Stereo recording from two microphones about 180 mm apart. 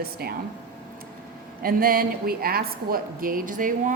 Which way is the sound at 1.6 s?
55° right (ahead or behind).